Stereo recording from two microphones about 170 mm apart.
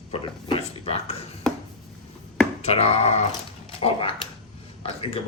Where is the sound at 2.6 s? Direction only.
40° left (ahead or behind).